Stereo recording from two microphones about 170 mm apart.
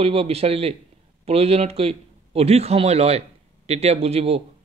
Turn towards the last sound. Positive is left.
turn(degrees=-35)  # may be behind; listen again after turning